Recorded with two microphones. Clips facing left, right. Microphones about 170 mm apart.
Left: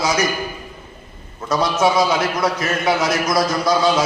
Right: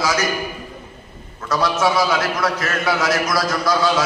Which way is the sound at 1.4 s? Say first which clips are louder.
Left 1 dB; 20° left (ahead or behind).